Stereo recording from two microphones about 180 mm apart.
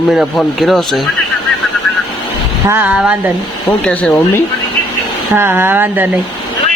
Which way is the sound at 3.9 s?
5° left (ahead or behind).